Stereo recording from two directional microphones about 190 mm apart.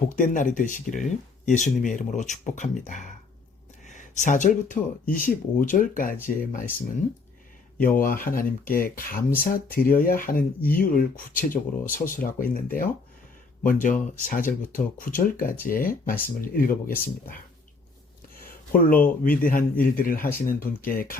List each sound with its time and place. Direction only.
0.2 s speech: 45° left (ahead or behind)
7.8 s speech: 50° left (ahead or behind)
13.7 s speech: 45° left (ahead or behind)
18.4 s speech: 50° left (ahead or behind)